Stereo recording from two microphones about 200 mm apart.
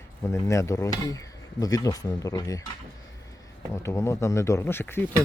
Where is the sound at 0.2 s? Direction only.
15° left (ahead or behind).